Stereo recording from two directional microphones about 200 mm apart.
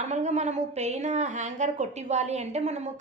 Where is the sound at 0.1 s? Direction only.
35° right (ahead or behind).